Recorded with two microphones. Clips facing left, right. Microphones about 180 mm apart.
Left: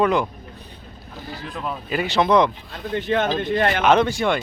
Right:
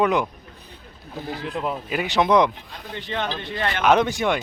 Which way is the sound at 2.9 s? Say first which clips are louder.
Left 7 dB; 50° left (ahead or behind).